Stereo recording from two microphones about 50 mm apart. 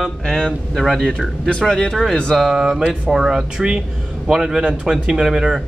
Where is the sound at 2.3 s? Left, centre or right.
Centre.